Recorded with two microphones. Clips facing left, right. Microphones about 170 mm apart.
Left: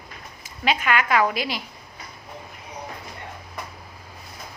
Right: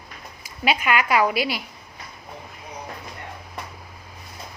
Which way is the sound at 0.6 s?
10° right (ahead or behind).